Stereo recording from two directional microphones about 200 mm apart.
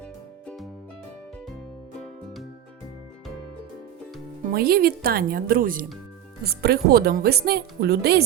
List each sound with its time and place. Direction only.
2.0 s music: centre (ahead or behind)
4.5 s speech: 50° right (ahead or behind)